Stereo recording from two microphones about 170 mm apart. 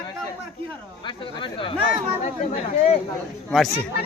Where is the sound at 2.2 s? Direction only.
45° left (ahead or behind).